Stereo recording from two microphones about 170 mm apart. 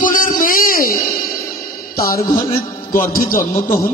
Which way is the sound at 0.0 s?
55° left (ahead or behind).